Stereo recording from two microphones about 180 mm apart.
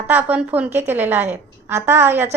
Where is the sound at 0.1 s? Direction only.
10° right (ahead or behind).